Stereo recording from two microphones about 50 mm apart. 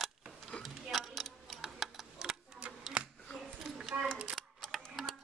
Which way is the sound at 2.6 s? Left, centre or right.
Right.